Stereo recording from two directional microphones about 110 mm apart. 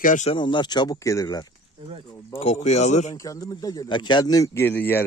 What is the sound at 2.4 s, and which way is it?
Speech, 80° left.